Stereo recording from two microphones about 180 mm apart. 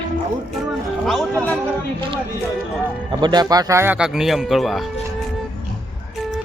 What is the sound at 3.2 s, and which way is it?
Speech, 25° right (ahead or behind).